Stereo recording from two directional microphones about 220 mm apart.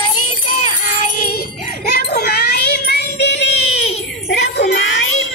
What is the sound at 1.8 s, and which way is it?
Child singing, 45° left (ahead or behind).